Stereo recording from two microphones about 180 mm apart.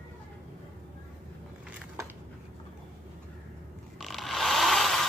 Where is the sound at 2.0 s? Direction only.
15° right (ahead or behind).